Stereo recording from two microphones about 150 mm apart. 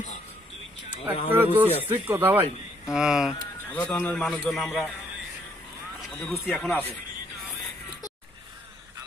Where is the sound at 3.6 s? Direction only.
15° left (ahead or behind).